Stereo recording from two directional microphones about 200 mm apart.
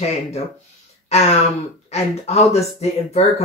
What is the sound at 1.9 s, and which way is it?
Speech, 30° left (ahead or behind).